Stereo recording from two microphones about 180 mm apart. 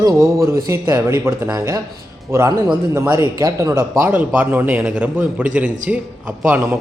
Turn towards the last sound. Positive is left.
turn(degrees=-10)  # may be behind; listen again after turning